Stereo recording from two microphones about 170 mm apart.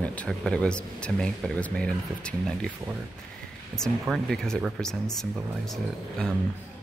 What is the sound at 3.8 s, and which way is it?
Speech, centre (ahead or behind).